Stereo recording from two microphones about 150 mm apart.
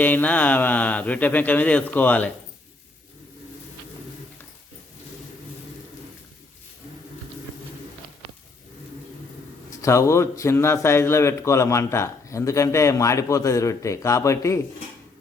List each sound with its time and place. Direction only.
0.0 s speech: 10° left (ahead or behind)
9.6 s speech: 20° left (ahead or behind)